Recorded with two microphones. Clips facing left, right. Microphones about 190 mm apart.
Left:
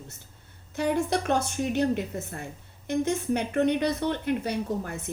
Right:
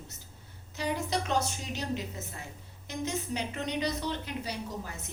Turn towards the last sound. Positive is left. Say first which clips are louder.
# left 8 dB
turn(degrees=55)  # may be behind; listen again after turning